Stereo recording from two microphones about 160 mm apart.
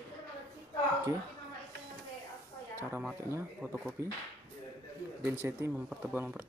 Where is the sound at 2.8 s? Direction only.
10° right (ahead or behind).